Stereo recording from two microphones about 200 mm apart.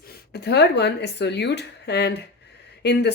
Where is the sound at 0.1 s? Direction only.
55° left (ahead or behind).